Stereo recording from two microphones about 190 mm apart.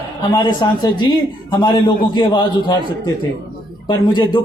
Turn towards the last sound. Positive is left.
turn(degrees=25)  # may be behind; listen again after turning